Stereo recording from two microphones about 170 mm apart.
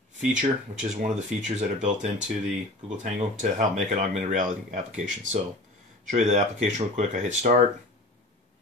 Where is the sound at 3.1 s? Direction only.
45° right (ahead or behind).